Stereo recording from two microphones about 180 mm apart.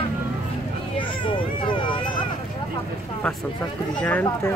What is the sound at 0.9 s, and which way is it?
Speech, 25° left (ahead or behind).